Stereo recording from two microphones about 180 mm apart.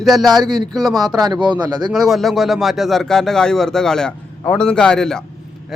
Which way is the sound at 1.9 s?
Centre (ahead or behind).